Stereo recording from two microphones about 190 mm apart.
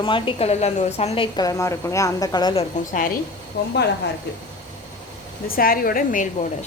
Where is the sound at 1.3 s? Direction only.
20° left (ahead or behind).